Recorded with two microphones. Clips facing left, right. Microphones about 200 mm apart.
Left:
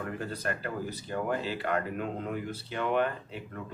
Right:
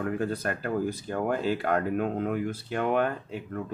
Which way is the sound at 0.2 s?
50° right (ahead or behind).